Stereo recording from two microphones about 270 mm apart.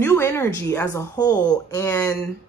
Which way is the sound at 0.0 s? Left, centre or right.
Centre.